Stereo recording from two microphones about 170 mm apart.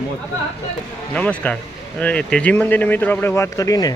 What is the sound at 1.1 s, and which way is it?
Speech, 10° left (ahead or behind).